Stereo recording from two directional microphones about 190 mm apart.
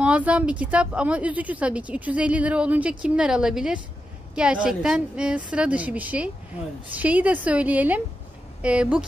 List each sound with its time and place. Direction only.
0.0 s speech: 5° right (ahead or behind)